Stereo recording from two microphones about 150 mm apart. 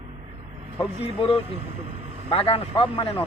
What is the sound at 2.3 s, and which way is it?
Speech, 40° left (ahead or behind).